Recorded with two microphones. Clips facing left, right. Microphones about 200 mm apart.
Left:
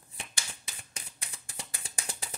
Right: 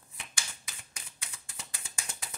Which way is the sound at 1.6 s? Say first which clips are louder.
Left 3 dB; 35° left (ahead or behind).